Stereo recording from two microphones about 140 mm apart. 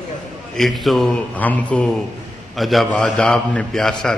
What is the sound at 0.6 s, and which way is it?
A man's voice, centre (ahead or behind).